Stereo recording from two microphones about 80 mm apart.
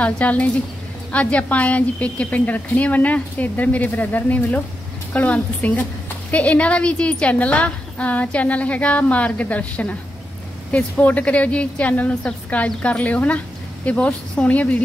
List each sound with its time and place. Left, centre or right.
0.0 s a woman's voice: centre